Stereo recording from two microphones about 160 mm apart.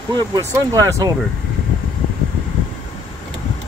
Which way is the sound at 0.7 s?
20° right (ahead or behind).